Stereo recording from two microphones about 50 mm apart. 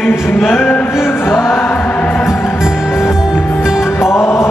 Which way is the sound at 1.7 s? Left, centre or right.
Left.